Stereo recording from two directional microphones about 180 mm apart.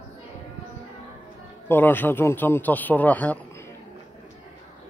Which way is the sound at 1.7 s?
10° left (ahead or behind).